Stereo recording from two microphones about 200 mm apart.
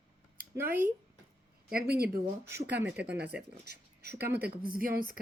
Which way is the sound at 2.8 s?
5° right (ahead or behind).